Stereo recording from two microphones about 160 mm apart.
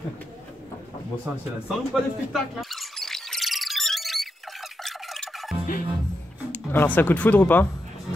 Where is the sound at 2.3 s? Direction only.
Centre (ahead or behind).